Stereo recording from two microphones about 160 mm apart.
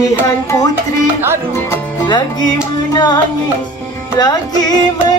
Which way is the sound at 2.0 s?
25° left (ahead or behind).